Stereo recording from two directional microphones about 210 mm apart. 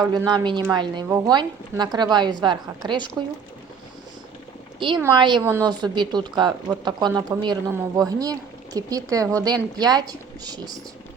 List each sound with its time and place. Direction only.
0.0 s a woman's voice: 20° right (ahead or behind)
5.2 s a woman's voice: 15° right (ahead or behind)